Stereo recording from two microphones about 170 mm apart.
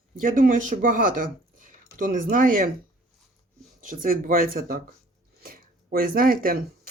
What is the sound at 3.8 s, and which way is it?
Speech, 55° right (ahead or behind).